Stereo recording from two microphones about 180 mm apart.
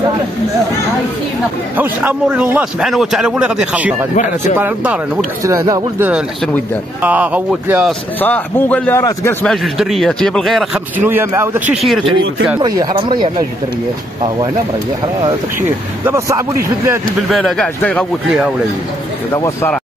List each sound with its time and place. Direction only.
1.8 s speech: 10° right (ahead or behind)
4.1 s a man's voice: 45° left (ahead or behind)
4.6 s speech: 10° right (ahead or behind)
8.2 s a man's voice: 10° left (ahead or behind)
9.5 s speech: centre (ahead or behind)
11.8 s speech: centre (ahead or behind)
12.5 s speech: 25° right (ahead or behind)
16.1 s speech: 15° right (ahead or behind)
17.3 s speech: centre (ahead or behind)
19.3 s a man's voice: 15° left (ahead or behind)